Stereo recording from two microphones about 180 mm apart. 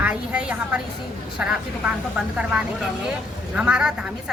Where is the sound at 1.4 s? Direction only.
5° right (ahead or behind).